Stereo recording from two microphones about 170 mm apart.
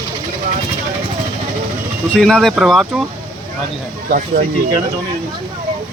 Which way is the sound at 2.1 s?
5° left (ahead or behind).